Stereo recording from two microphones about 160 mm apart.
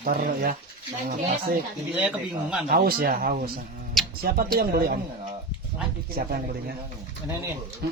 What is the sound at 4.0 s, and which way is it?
Music, centre (ahead or behind).